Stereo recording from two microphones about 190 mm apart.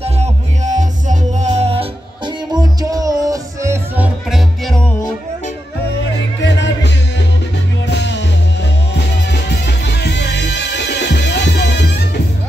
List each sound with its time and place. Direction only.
0.0 s music: 35° right (ahead or behind); by 4.9 s centre (ahead or behind)
6.4 s music: 65° left (ahead or behind)